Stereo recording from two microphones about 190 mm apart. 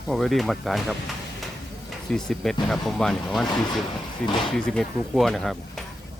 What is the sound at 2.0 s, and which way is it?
Speech, centre (ahead or behind).